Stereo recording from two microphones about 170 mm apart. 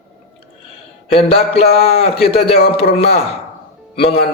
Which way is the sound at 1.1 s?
35° left (ahead or behind).